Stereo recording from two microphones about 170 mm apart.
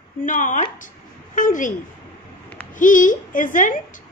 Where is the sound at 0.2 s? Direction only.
50° left (ahead or behind).